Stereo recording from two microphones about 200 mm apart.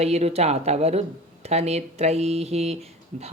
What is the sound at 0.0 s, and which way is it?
Speech, 30° right (ahead or behind).